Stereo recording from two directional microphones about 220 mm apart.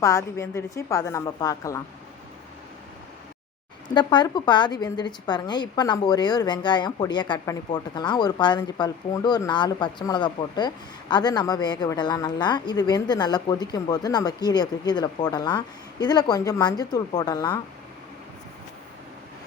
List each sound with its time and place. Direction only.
0.0 s a woman's voice: 15° left (ahead or behind)
3.8 s a woman's voice: 20° left (ahead or behind)